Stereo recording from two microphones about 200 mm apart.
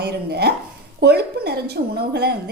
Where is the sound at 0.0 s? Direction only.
55° right (ahead or behind).